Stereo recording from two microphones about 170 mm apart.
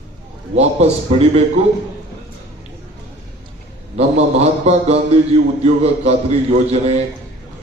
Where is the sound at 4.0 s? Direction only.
40° right (ahead or behind).